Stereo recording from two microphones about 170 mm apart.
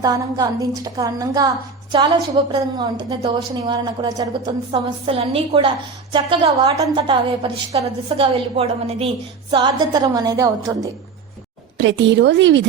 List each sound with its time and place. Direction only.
0.0 s a woman's voice: 20° right (ahead or behind)
11.8 s speech: 90° right